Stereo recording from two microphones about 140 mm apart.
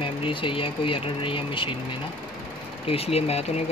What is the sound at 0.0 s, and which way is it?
Speech, 40° left (ahead or behind).